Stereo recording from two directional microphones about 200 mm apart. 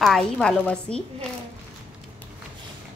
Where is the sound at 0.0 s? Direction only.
Centre (ahead or behind).